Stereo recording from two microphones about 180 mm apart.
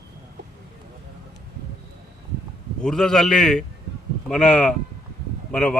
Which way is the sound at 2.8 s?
Centre (ahead or behind).